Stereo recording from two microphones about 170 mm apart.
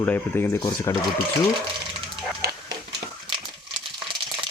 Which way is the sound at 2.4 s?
70° right (ahead or behind).